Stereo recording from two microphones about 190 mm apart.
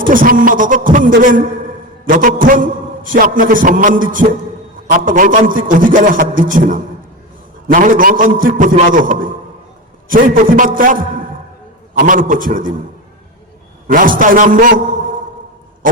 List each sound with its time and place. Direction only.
0.0 s a man's voice: 45° right (ahead or behind)
2.0 s a man's voice: 45° right (ahead or behind)
13.8 s a man's voice: 45° right (ahead or behind)